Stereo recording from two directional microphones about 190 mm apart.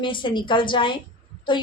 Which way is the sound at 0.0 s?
25° left (ahead or behind).